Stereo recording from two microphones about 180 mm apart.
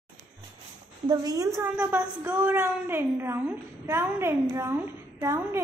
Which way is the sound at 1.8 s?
10° right (ahead or behind).